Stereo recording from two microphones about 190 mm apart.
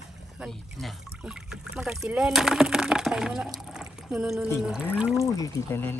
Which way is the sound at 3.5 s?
5° right (ahead or behind).